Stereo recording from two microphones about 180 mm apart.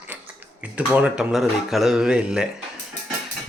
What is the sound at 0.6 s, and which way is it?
Speech, 5° right (ahead or behind).